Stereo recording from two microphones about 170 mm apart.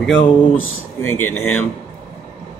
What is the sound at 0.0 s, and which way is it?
Speech, 5° left (ahead or behind).